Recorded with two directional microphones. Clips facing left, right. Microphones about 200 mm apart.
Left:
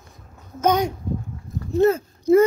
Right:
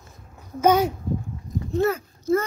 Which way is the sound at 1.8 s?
20° left (ahead or behind).